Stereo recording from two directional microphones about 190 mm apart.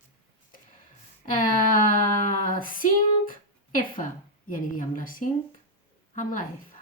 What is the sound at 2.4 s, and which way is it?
Female singing, 45° left (ahead or behind).